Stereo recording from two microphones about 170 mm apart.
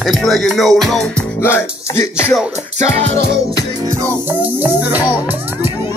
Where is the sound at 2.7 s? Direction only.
40° right (ahead or behind).